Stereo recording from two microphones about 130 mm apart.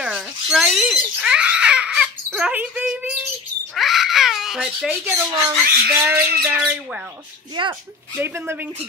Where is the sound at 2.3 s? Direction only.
10° right (ahead or behind).